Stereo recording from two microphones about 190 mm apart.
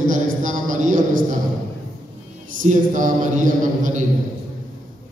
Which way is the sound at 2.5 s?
45° right (ahead or behind).